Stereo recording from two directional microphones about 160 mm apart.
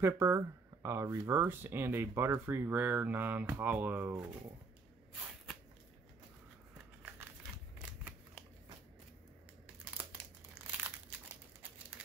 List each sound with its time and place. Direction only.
0.0 s speech: 15° right (ahead or behind)
7.0 s crumpling: 15° right (ahead or behind)